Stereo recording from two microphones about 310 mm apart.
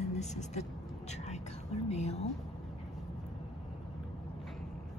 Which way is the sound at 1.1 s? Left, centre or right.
Left.